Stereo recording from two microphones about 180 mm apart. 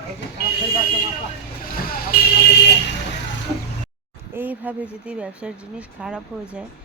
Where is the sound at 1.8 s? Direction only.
55° left (ahead or behind).